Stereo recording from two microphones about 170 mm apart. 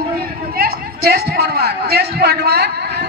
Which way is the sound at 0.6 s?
65° right (ahead or behind).